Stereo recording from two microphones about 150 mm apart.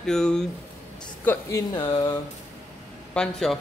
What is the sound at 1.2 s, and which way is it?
Speech, 15° left (ahead or behind).